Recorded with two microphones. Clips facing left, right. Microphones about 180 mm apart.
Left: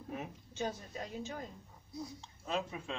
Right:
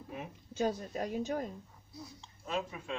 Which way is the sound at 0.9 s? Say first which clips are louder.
Right 7 dB; 55° right (ahead or behind).